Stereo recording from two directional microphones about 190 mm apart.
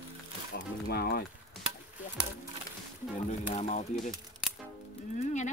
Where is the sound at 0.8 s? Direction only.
55° left (ahead or behind).